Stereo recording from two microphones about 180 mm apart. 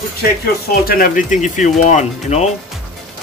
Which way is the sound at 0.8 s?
50° left (ahead or behind).